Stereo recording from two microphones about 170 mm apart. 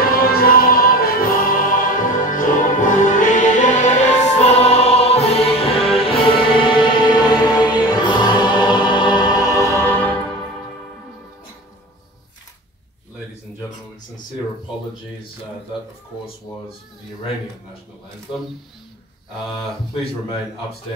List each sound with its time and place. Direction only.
0.0 s music: 60° left (ahead or behind); by 10.1 s 10° left (ahead or behind)